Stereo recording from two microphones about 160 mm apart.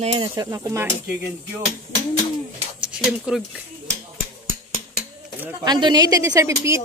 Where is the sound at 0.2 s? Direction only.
25° right (ahead or behind).